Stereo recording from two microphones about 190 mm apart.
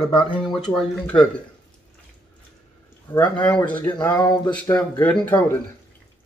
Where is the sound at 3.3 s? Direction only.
5° left (ahead or behind).